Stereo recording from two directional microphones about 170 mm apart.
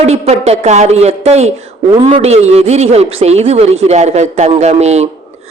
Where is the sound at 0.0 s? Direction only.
40° right (ahead or behind).